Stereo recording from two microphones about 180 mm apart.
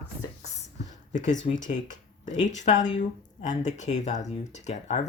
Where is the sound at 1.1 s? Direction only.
45° left (ahead or behind).